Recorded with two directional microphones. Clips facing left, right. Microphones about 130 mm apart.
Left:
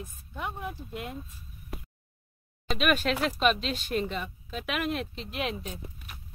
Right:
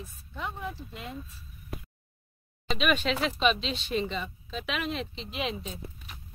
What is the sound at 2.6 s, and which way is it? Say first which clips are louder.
Speech: left 1 dB; 5° left (ahead or behind).